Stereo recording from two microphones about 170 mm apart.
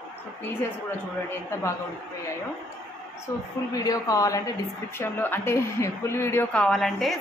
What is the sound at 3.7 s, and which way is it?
A woman's voice, 20° left (ahead or behind).